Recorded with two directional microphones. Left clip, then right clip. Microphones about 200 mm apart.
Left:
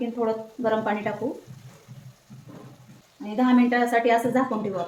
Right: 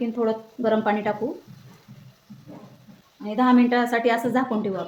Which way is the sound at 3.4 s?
50° right (ahead or behind).